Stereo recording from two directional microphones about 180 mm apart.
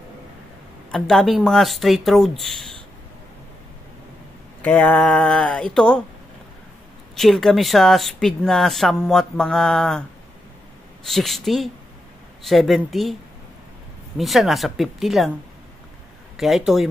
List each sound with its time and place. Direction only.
0.9 s speech: centre (ahead or behind)
4.6 s speech: 10° left (ahead or behind)
7.2 s speech: centre (ahead or behind)
11.1 s speech: centre (ahead or behind)
14.1 s speech: centre (ahead or behind)
16.3 s speech: centre (ahead or behind)